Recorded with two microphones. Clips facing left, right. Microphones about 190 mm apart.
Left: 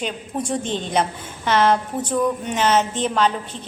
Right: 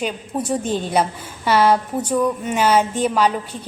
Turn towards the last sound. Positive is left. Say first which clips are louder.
# right 2 dB
turn(degrees=-10)  # may be behind; listen again after turning